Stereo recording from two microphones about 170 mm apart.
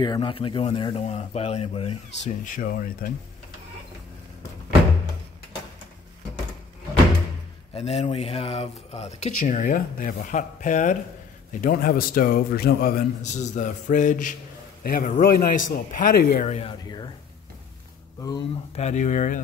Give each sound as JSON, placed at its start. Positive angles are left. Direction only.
{"t": 0.0, "sound": "speech", "side_deg": 25}
{"t": 2.2, "sound": "speech", "side_deg": 50}
{"t": 7.7, "sound": "speech", "side_deg": 40}
{"t": 13.2, "sound": "a man's voice", "side_deg": 45}
{"t": 16.8, "sound": "speech", "side_deg": 25}
{"t": 18.8, "sound": "a man's voice", "side_deg": 45}